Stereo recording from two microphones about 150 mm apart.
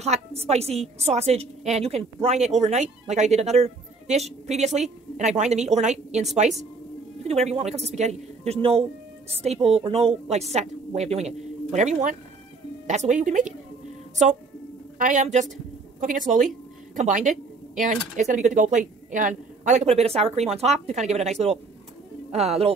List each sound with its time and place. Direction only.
0.0 s a woman's voice: 45° right (ahead or behind)
15.0 s a woman's voice: 60° right (ahead or behind); by 22.8 s 45° right (ahead or behind)